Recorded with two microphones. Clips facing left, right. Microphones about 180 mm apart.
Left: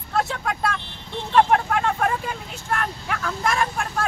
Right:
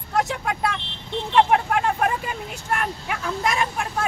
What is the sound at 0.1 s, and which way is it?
Speech, 15° right (ahead or behind).